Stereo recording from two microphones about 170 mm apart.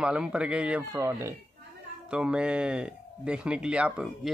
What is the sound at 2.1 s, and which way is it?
Speech, 5° right (ahead or behind).